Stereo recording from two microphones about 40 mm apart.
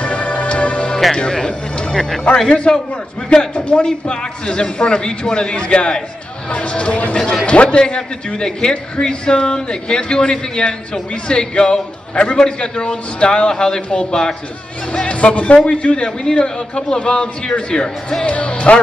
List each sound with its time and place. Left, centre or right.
0.0 s music: left
1.1 s speech: centre
2.5 s a man's voice: left
15.0 s a man's voice: left
16.3 s a man's voice: centre
18.2 s a man's voice: left